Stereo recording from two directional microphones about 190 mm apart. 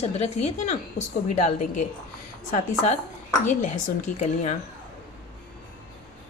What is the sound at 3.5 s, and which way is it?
A woman's voice, 40° left (ahead or behind).